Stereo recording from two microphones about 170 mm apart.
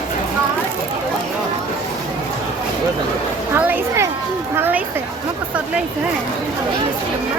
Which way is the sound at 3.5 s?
10° right (ahead or behind).